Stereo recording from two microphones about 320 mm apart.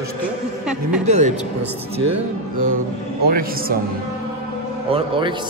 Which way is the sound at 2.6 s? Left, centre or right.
Right.